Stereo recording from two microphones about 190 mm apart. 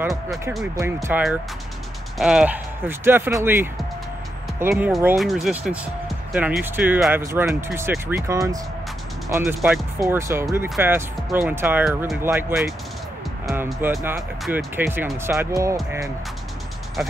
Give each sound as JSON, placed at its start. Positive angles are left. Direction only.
{"t": 0.1, "sound": "speech", "side_deg": 0}
{"t": 13.8, "sound": "speech", "side_deg": -10}